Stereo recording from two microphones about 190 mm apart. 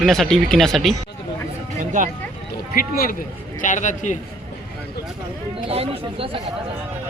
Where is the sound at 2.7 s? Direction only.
50° left (ahead or behind).